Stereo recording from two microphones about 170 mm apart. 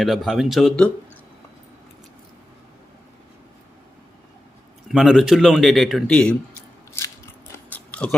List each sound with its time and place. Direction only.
0.0 s a man's voice: centre (ahead or behind)
4.9 s a man's voice: centre (ahead or behind)
7.7 s a sound: 5° left (ahead or behind)